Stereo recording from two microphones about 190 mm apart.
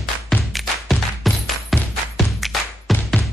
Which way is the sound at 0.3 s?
Centre (ahead or behind).